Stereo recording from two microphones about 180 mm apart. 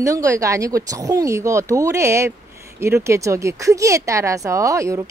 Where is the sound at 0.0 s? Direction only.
15° right (ahead or behind).